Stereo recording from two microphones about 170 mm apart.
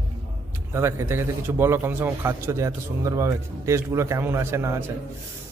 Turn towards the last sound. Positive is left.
turn(degrees=-15)  # may be behind; listen again after turning